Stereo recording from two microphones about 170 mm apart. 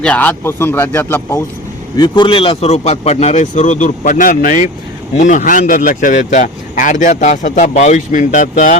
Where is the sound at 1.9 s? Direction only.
25° left (ahead or behind).